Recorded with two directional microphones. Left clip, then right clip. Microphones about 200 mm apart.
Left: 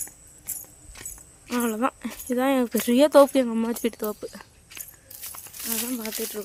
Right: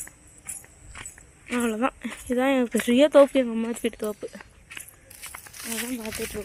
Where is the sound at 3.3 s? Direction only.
15° left (ahead or behind).